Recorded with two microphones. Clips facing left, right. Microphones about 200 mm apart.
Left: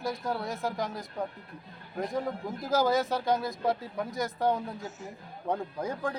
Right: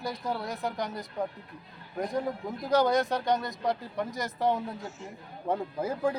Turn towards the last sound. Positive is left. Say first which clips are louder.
# right 4 dB
turn(degrees=-5)  # may be behind; listen again after turning